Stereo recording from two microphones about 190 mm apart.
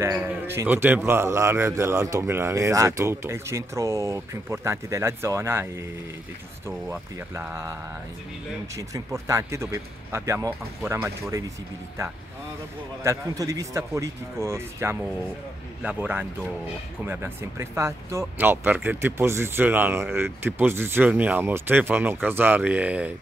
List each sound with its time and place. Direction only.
0.0 s a man's voice: 10° right (ahead or behind)
6.9 s a man's voice: 15° right (ahead or behind)
8.7 s a man's voice: 15° right (ahead or behind)
13.0 s a man's voice: 15° right (ahead or behind)